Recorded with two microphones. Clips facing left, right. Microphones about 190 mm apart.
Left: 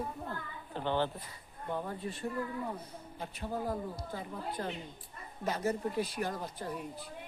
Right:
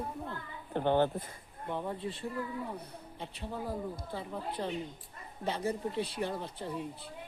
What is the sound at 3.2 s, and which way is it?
Speech, 30° right (ahead or behind).